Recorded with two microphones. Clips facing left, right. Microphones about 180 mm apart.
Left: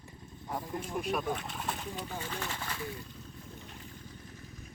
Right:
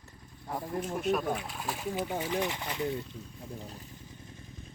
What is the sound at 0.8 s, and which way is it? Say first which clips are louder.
Speech: right 4 dB; centre (ahead or behind).